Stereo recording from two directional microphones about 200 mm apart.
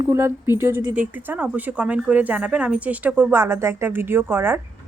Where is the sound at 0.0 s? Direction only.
15° right (ahead or behind).